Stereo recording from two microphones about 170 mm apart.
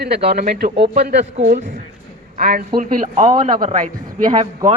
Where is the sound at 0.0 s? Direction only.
75° right (ahead or behind).